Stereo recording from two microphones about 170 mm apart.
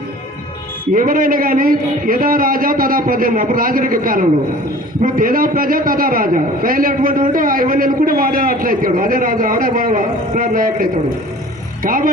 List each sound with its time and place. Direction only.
0.9 s a man's voice: 55° right (ahead or behind)